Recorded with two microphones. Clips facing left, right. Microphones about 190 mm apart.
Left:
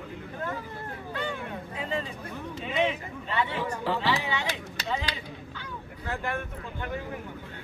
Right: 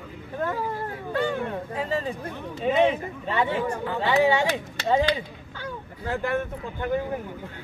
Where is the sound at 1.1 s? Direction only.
40° right (ahead or behind).